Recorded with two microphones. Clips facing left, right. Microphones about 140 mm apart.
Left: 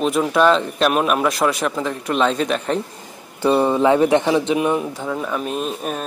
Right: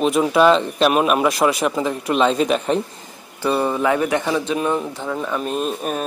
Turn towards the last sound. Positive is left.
turn(degrees=0)  # may be behind; listen again after turning